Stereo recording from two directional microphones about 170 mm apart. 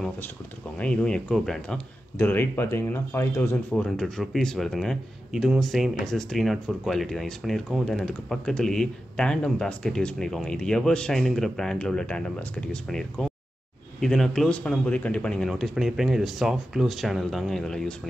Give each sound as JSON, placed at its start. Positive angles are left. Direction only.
{"t": 0.7, "sound": "speech", "side_deg": 5}
{"t": 3.7, "sound": "speech", "side_deg": 5}